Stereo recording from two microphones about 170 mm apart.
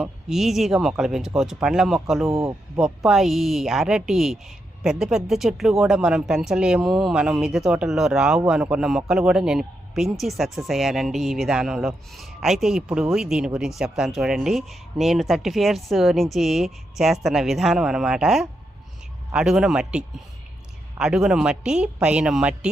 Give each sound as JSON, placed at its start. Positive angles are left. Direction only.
{"t": 0.0, "sound": "speech", "side_deg": 0}
{"t": 2.4, "sound": "speech", "side_deg": -15}
{"t": 2.8, "sound": "speech", "side_deg": 0}
{"t": 21.0, "sound": "speech", "side_deg": -5}